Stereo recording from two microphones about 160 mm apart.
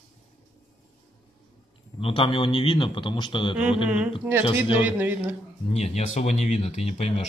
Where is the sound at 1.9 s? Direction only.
35° left (ahead or behind).